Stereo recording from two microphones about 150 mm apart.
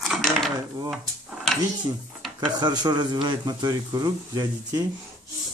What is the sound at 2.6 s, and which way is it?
Speech, 30° right (ahead or behind).